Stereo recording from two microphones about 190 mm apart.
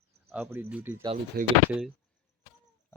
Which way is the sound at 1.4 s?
50° right (ahead or behind).